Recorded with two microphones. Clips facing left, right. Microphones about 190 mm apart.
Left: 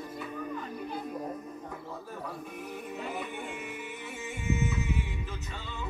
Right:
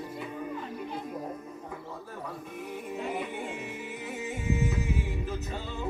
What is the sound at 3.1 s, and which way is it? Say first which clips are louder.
Music: right 4 dB; 25° right (ahead or behind).